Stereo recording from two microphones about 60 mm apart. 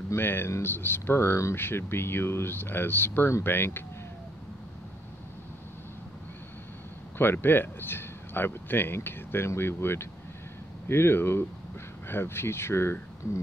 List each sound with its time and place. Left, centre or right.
0.1 s speech: left
7.2 s speech: left